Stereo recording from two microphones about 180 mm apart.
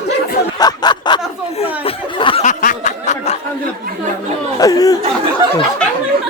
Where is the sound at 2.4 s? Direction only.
45° left (ahead or behind).